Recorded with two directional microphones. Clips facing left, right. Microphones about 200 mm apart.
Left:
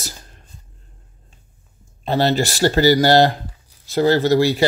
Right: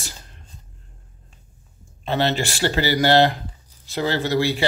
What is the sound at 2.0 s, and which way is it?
Speech, 35° left (ahead or behind).